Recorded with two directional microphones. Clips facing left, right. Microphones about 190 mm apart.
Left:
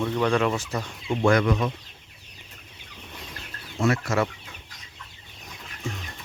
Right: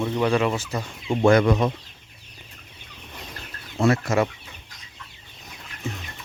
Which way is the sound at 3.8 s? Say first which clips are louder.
Right 3 dB; 35° right (ahead or behind).